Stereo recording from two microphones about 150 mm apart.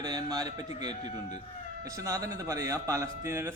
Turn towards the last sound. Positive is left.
turn(degrees=-20)  # may be behind; listen again after turning